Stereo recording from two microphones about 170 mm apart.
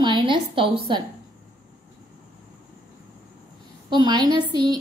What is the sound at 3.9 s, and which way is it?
Speech, 25° right (ahead or behind).